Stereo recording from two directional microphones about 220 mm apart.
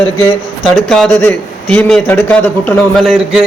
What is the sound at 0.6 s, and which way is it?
A man's voice, centre (ahead or behind).